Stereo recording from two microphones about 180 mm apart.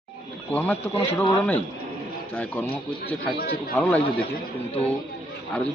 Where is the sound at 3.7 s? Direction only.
5° left (ahead or behind).